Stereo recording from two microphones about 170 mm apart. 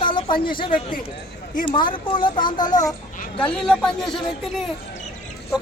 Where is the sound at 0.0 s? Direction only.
30° left (ahead or behind).